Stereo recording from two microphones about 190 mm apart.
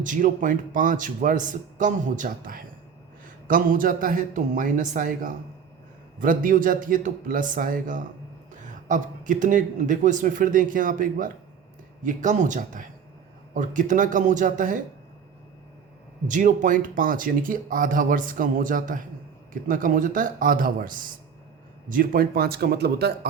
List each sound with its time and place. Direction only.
0.0 s speech: 45° right (ahead or behind)
16.2 s a man's voice: 40° right (ahead or behind); by 23.1 s 60° right (ahead or behind)